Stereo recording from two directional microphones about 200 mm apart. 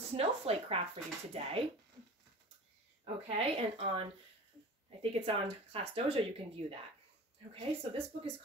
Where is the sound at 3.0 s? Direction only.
30° right (ahead or behind).